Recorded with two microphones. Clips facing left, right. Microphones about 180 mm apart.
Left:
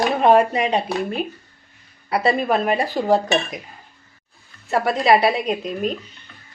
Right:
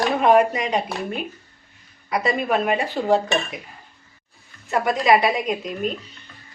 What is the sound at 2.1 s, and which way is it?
Speech, 30° left (ahead or behind).